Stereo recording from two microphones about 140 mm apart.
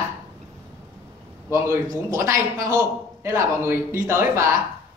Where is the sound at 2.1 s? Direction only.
20° right (ahead or behind).